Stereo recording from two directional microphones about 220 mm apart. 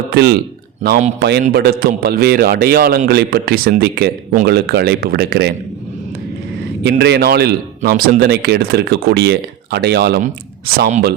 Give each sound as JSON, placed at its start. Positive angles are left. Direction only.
{"t": 0.1, "sound": "speech", "side_deg": -45}
{"t": 0.8, "sound": "speech", "side_deg": -35}
{"t": 1.2, "sound": "a man's voice", "side_deg": -45}
{"t": 7.0, "sound": "a man's voice", "side_deg": -45}